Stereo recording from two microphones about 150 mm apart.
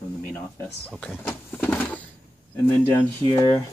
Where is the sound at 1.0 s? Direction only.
10° left (ahead or behind).